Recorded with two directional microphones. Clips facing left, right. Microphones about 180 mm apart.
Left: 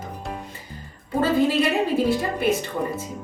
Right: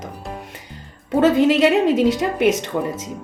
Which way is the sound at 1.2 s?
85° right.